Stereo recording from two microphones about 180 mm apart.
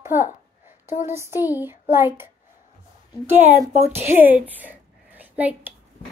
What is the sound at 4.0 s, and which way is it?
Speech, 10° right (ahead or behind).